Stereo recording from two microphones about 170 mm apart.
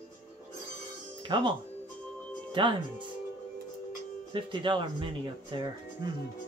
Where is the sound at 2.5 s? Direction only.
30° right (ahead or behind).